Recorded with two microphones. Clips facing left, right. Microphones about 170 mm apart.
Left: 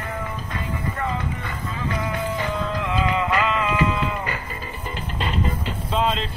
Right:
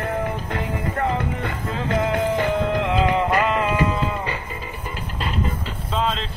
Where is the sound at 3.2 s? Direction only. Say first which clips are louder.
Right 2 dB; 45° right (ahead or behind).